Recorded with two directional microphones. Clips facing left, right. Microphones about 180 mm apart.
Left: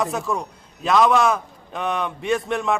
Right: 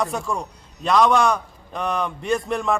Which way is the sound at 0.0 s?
Centre (ahead or behind).